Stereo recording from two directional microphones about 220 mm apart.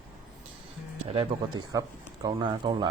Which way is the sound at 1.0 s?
25° right (ahead or behind).